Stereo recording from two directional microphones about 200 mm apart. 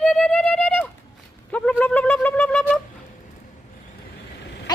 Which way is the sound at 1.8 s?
5° left (ahead or behind).